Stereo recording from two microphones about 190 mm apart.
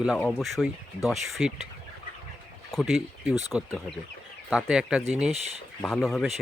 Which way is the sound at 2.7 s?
Centre (ahead or behind).